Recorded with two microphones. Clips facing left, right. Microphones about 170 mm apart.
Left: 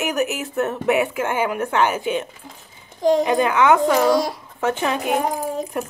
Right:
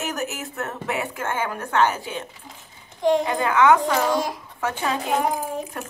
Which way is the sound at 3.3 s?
20° left (ahead or behind).